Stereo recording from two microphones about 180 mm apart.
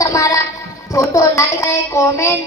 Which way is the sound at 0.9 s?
15° left (ahead or behind).